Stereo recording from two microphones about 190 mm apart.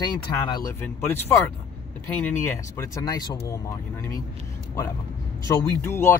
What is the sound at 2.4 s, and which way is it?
Speech, 10° left (ahead or behind).